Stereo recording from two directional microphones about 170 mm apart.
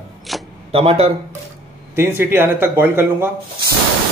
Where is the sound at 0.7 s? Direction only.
35° right (ahead or behind).